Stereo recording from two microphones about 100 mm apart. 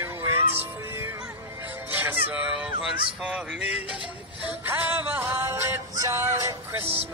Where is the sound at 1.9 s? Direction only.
20° right (ahead or behind).